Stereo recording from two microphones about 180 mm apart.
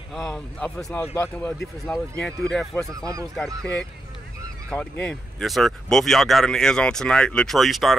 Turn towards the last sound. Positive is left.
turn(degrees=0)  # may be behind; listen again after turning